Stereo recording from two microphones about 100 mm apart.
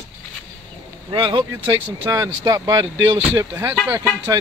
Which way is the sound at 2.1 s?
35° right (ahead or behind).